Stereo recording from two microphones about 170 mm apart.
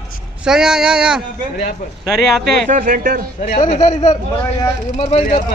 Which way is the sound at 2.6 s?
55° right (ahead or behind).